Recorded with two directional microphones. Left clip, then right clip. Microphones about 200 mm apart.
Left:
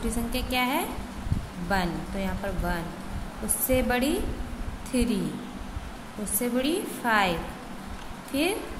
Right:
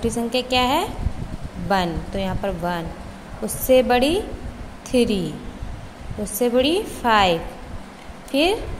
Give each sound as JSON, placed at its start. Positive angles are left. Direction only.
{"t": 0.1, "sound": "speech", "side_deg": -25}
{"t": 6.2, "sound": "a woman's voice", "side_deg": -25}